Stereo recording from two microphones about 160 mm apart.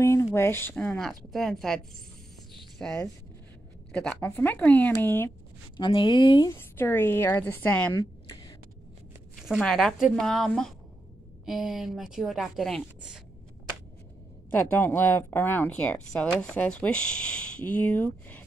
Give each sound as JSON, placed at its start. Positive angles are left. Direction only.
{"t": 0.0, "sound": "a woman's voice", "side_deg": 15}
{"t": 2.8, "sound": "a woman's voice", "side_deg": 5}
{"t": 5.8, "sound": "speech", "side_deg": 30}
{"t": 6.5, "sound": "speech", "side_deg": 15}
{"t": 7.9, "sound": "a sound", "side_deg": 30}
{"t": 9.4, "sound": "a woman's voice", "side_deg": 0}
{"t": 14.5, "sound": "speech", "side_deg": 10}